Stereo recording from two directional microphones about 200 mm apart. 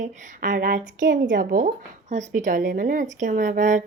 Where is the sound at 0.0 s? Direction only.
40° right (ahead or behind).